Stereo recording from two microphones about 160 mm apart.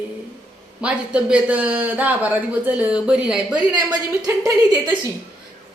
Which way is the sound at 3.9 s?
20° right (ahead or behind).